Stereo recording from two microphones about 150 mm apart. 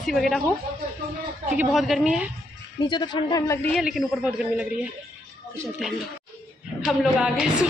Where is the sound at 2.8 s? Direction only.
30° left (ahead or behind).